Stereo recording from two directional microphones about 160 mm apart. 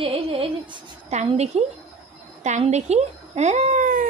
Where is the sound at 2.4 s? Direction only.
45° right (ahead or behind).